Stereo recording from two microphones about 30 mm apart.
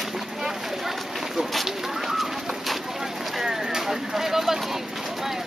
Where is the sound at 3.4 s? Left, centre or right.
Centre.